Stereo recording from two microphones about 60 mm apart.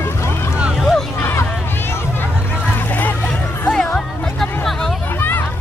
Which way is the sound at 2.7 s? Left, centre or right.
Left.